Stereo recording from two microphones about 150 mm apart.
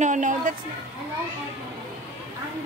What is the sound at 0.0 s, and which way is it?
Speech, 55° right (ahead or behind).